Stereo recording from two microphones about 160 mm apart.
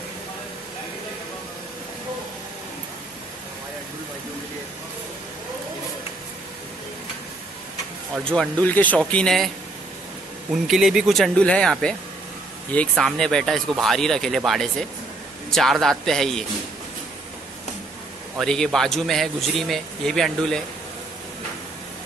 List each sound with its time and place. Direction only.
8.2 s speech: 5° left (ahead or behind)
10.5 s a man's voice: centre (ahead or behind)
18.4 s a man's voice: 5° left (ahead or behind)